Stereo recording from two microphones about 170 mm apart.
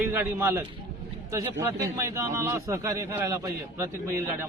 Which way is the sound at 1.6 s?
15° right (ahead or behind).